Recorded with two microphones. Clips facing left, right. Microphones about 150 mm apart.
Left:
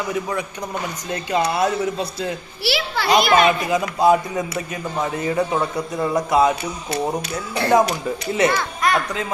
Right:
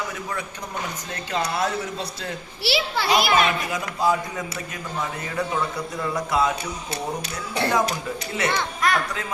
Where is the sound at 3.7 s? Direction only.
20° left (ahead or behind).